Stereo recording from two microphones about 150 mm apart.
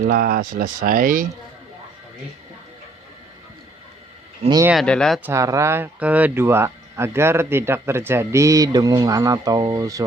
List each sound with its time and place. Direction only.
0.1 s speech: 80° right; by 1.3 s 65° right (ahead or behind)
4.7 s speech: centre (ahead or behind)
5.2 s speech: 20° right (ahead or behind)